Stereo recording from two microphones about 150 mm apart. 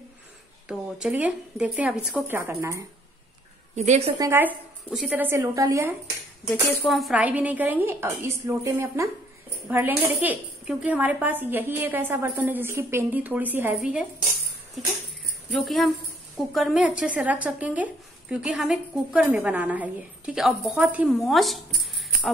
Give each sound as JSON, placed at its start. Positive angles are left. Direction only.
{"t": 0.7, "sound": "a woman's voice", "side_deg": -5}
{"t": 3.7, "sound": "a woman's voice", "side_deg": -50}
{"t": 4.2, "sound": "a woman's voice", "side_deg": -15}
{"t": 6.9, "sound": "a woman's voice", "side_deg": 0}
{"t": 15.5, "sound": "a woman's voice", "side_deg": 0}